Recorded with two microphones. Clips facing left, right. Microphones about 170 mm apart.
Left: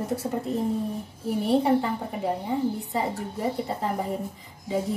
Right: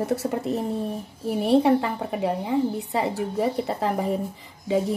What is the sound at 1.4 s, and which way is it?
A woman's voice, 80° right.